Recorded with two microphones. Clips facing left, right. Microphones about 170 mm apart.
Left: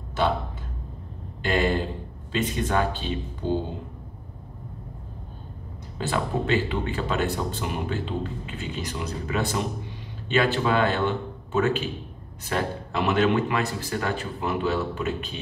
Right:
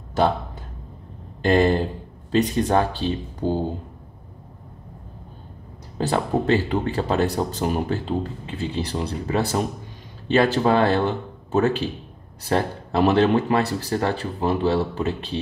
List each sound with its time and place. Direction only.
1.4 s speech: 40° right (ahead or behind)
5.9 s speech: 40° right (ahead or behind)